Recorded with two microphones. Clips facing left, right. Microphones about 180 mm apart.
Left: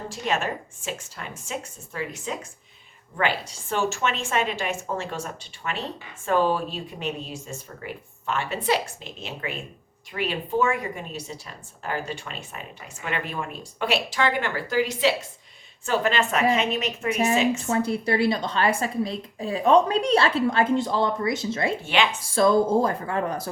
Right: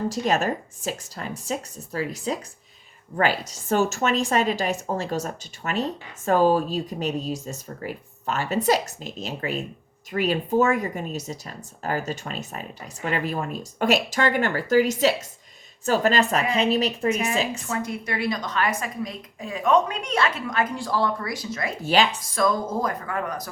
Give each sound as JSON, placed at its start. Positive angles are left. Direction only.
{"t": 0.1, "sound": "a woman's voice", "side_deg": -40}
{"t": 17.6, "sound": "a woman's voice", "side_deg": 30}
{"t": 21.8, "sound": "a woman's voice", "side_deg": -40}
{"t": 22.2, "sound": "speech", "side_deg": 30}